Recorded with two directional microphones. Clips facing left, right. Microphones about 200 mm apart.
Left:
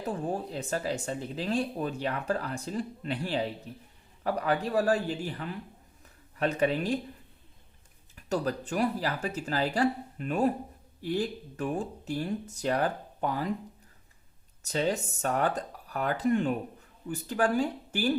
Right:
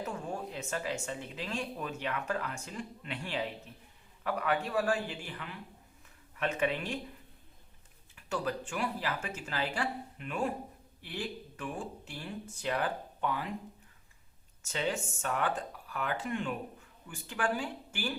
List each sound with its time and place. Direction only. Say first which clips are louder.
0.0 s speech: left 5 dB; 35° left (ahead or behind)
8.1 s speech: left 5 dB; 40° left (ahead or behind)
14.6 s speech: left 5 dB; 40° left (ahead or behind)